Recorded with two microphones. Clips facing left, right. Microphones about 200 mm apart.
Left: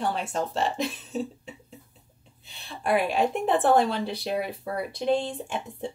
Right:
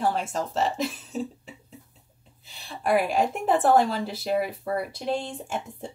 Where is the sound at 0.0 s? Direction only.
Centre (ahead or behind).